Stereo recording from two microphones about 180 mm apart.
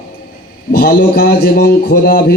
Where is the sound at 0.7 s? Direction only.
60° left (ahead or behind).